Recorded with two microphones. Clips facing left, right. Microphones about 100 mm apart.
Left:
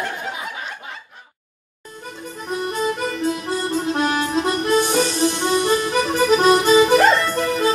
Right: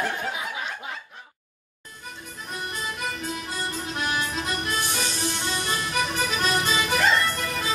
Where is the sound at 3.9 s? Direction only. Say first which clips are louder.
Left 7 dB; 35° left (ahead or behind).